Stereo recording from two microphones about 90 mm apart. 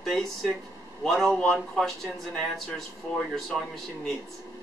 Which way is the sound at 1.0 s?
5° left (ahead or behind).